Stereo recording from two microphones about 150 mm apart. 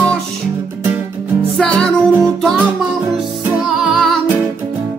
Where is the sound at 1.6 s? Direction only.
5° left (ahead or behind).